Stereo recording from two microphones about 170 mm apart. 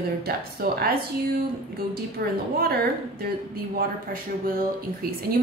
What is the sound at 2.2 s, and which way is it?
Speech, 65° right (ahead or behind).